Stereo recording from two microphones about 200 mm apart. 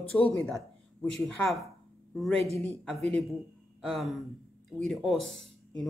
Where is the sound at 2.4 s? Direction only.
30° right (ahead or behind).